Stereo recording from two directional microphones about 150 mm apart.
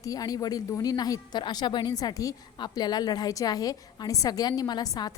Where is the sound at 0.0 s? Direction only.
25° left (ahead or behind).